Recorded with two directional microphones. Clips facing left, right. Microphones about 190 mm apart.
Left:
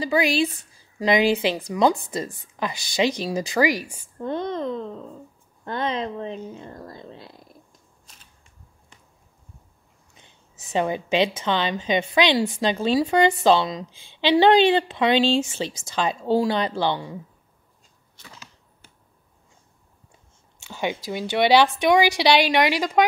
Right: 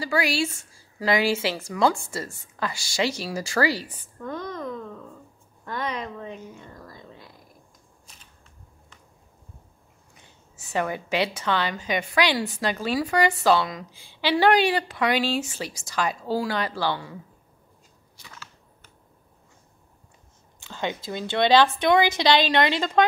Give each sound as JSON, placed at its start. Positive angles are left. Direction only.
{"t": 0.0, "sound": "a woman's voice", "side_deg": 20}
{"t": 4.2, "sound": "a woman's voice", "side_deg": 25}
{"t": 10.1, "sound": "a woman's voice", "side_deg": 20}
{"t": 20.5, "sound": "a sound", "side_deg": 15}
{"t": 21.1, "sound": "a woman's voice", "side_deg": 10}